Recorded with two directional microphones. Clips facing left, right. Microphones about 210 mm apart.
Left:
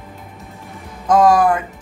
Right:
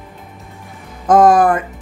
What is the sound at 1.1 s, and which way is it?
Speech, 50° right (ahead or behind).